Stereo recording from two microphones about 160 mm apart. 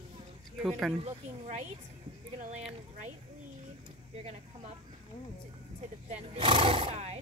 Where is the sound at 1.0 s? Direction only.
45° right (ahead or behind).